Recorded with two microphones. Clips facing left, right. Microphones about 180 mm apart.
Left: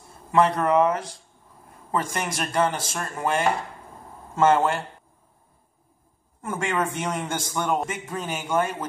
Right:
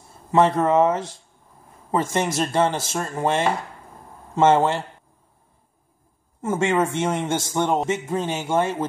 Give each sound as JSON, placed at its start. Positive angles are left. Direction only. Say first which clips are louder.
{"t": 0.3, "sound": "a man's voice", "louder": "right 2 dB", "side_deg": -25}
{"t": 2.1, "sound": "a man's voice", "louder": "right 5 dB", "side_deg": -25}
{"t": 6.4, "sound": "a man's voice", "louder": "right 5 dB", "side_deg": -25}